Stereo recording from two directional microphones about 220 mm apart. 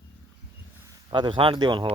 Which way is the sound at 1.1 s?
20° right (ahead or behind).